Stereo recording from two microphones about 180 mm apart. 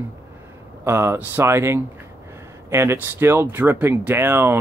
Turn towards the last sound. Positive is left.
turn(degrees=-15)  # may be behind; listen again after turning